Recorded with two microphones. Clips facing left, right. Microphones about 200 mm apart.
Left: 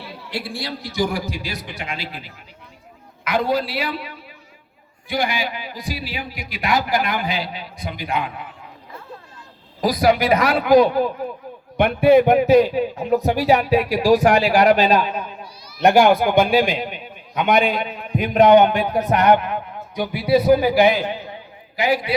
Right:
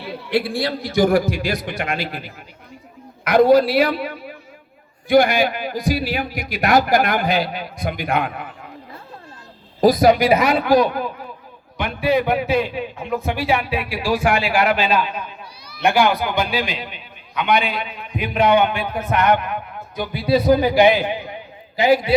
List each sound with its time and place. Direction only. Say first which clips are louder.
0.0 s a man's voice: right 9 dB; 55° right (ahead or behind)
3.4 s a man's voice: right 12 dB; 40° right (ahead or behind)
6.1 s a man's voice: right 6 dB; 70° right (ahead or behind)
6.5 s a man's voice: right 5 dB; 45° right (ahead or behind)
6.9 s a man's voice: right 4 dB; 70° right (ahead or behind); by 8.4 s 50° right (ahead or behind)
9.9 s a woman's voice: even; 20° right (ahead or behind)
10.4 s a man's voice: right 1 dB; 5° left (ahead or behind)
10.7 s a man's voice: left 6 dB; 25° left (ahead or behind)
11.8 s a man's voice: left 6 dB; 55° left (ahead or behind); by 19.5 s 35° left (ahead or behind)
20.0 s speech: left 1 dB; 10° left (ahead or behind)
21.0 s a man's voice: right 2 dB; 15° right (ahead or behind)
21.8 s a man's voice: right 4 dB; 25° right (ahead or behind)